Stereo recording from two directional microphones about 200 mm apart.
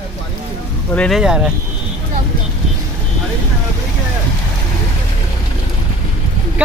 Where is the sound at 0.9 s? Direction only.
5° left (ahead or behind).